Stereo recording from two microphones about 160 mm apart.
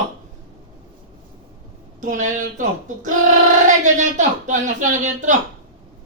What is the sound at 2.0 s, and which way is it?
Speech, 55° right (ahead or behind).